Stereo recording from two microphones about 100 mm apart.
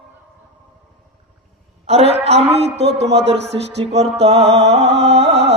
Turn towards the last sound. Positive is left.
turn(degrees=-90)